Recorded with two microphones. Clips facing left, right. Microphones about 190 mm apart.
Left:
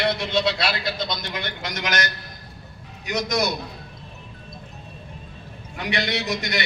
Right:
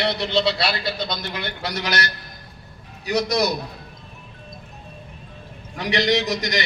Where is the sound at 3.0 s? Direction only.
35° right (ahead or behind).